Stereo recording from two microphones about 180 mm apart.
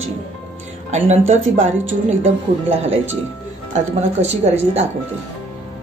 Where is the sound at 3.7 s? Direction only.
35° right (ahead or behind).